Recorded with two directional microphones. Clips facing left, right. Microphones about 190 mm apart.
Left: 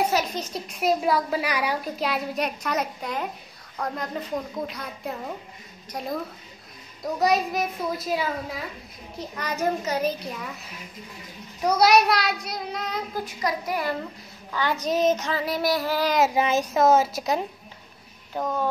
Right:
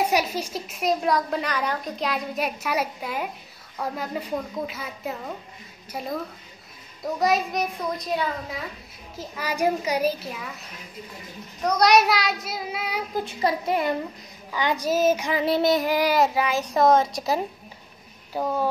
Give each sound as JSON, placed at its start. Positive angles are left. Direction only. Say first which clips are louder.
{"t": 0.1, "sound": "a woman's voice", "louder": "right 1 dB", "side_deg": -10}
{"t": 7.2, "sound": "a woman's voice", "louder": "even", "side_deg": 0}
{"t": 11.6, "sound": "a woman's voice", "louder": "even", "side_deg": 5}
{"t": 13.1, "sound": "a woman's voice", "louder": "right 6 dB", "side_deg": -25}
{"t": 14.5, "sound": "child singing", "louder": "right 1 dB", "side_deg": -15}
{"t": 15.4, "sound": "a woman's voice", "louder": "right 5 dB", "side_deg": -25}
{"t": 16.3, "sound": "a child's voice", "louder": "left 2 dB", "side_deg": 20}
{"t": 16.7, "sound": "a woman's voice", "louder": "right 1 dB", "side_deg": 5}
{"t": 18.3, "sound": "child singing", "louder": "right 2 dB", "side_deg": -10}